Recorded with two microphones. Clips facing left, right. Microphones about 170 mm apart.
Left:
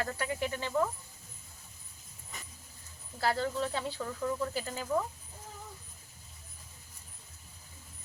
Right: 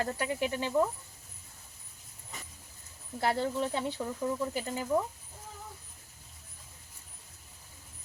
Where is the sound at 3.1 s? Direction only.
20° right (ahead or behind).